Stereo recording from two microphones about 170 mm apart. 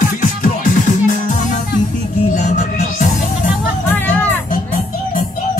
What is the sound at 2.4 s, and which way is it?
Music, 45° left (ahead or behind).